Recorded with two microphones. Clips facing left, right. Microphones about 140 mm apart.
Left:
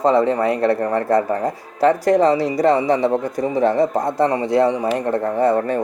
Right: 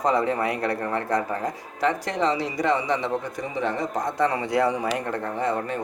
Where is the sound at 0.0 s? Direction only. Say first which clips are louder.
Left 7 dB; 30° left (ahead or behind).